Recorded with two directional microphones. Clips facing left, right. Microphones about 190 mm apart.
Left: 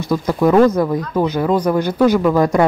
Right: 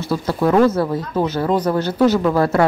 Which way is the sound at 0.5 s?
15° left (ahead or behind).